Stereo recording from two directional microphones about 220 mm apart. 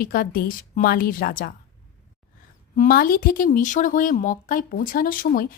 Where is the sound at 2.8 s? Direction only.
40° left (ahead or behind).